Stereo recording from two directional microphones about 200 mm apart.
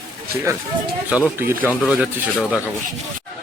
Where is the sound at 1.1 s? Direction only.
10° right (ahead or behind).